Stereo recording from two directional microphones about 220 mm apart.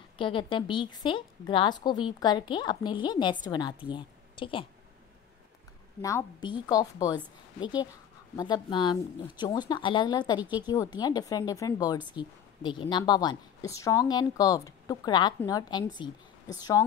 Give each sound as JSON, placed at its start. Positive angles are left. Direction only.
{"t": 0.2, "sound": "a woman's voice", "side_deg": 20}
{"t": 6.0, "sound": "a woman's voice", "side_deg": 15}